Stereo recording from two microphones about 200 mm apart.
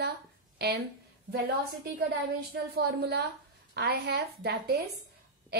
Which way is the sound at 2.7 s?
55° right (ahead or behind).